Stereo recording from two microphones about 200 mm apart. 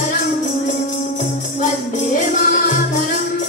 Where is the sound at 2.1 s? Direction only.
40° left (ahead or behind).